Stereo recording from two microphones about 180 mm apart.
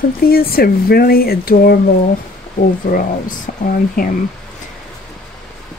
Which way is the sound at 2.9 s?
50° left (ahead or behind).